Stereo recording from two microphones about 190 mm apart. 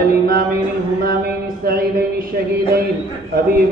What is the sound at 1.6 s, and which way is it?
Speech, 55° right (ahead or behind).